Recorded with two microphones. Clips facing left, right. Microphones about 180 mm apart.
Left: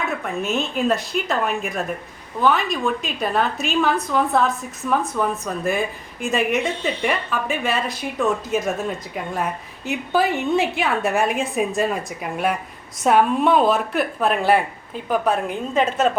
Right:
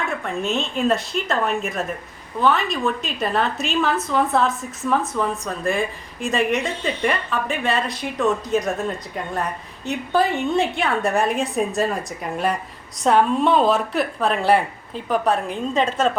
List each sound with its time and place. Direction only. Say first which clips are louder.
0.2 s a woman's voice: even; centre (ahead or behind)